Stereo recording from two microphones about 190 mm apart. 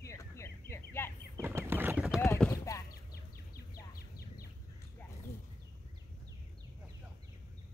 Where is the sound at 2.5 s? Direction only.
15° left (ahead or behind).